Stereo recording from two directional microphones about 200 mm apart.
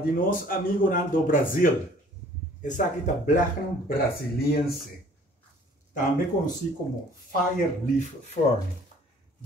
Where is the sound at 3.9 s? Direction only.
50° left (ahead or behind).